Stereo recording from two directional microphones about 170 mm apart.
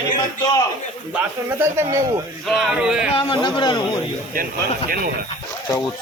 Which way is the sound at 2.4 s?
Centre (ahead or behind).